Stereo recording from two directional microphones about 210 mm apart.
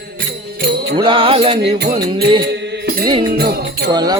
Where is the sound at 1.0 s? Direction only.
25° right (ahead or behind).